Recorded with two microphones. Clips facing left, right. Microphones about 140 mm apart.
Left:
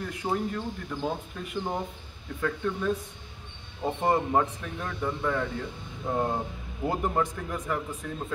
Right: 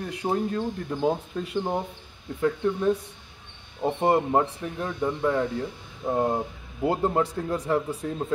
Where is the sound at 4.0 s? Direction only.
30° right (ahead or behind).